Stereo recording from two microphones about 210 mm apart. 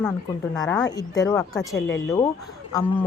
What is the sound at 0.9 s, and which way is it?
A woman's voice, 15° left (ahead or behind).